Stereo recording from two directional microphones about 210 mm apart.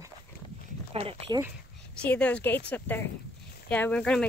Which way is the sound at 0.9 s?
25° right (ahead or behind).